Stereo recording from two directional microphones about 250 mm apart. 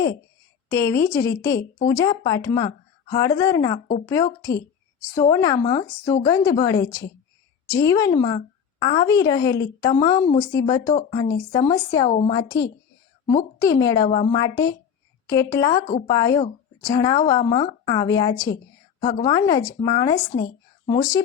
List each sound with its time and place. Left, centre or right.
0.7 s speech: centre